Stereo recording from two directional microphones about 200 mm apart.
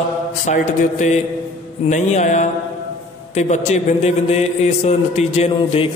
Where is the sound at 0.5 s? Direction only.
35° left (ahead or behind).